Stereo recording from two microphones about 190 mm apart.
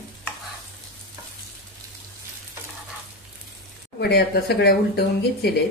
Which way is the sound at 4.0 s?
55° left (ahead or behind).